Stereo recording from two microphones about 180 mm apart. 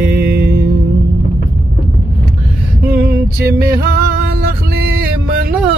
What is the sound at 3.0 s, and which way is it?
Music, 60° right (ahead or behind).